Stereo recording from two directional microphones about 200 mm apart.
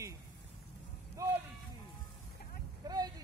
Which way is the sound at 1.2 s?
15° right (ahead or behind).